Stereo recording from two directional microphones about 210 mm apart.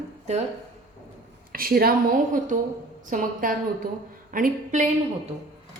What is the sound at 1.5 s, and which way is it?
A woman's voice, 45° right (ahead or behind).